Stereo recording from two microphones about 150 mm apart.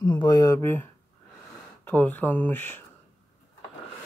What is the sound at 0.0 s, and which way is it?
Speech, 30° left (ahead or behind).